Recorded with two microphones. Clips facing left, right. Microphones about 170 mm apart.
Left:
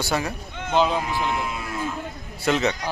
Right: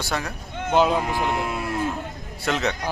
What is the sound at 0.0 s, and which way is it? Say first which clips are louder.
Speech: left 3 dB; 5° left (ahead or behind).